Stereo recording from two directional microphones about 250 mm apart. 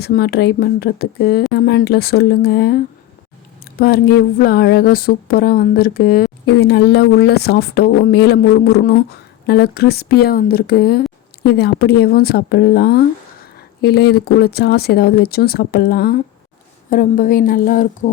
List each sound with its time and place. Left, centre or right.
0.0 s speech: left